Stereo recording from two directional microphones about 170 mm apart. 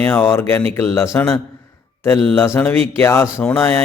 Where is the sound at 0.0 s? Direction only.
10° left (ahead or behind).